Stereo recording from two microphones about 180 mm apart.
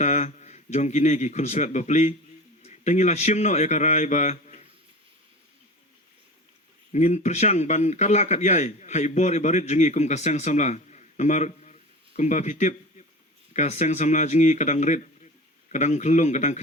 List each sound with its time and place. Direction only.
0.0 s a man's voice: 40° left (ahead or behind)
6.9 s a man's voice: 40° left (ahead or behind)